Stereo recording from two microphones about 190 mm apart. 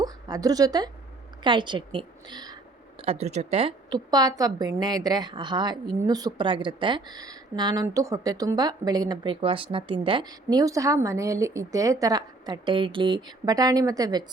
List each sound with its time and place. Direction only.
0.0 s a woman's voice: 20° right (ahead or behind)
3.0 s speech: 35° right (ahead or behind)